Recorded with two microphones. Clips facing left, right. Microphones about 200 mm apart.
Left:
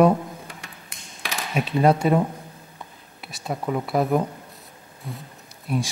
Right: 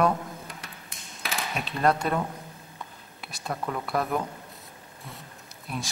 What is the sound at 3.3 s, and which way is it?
Speech, centre (ahead or behind).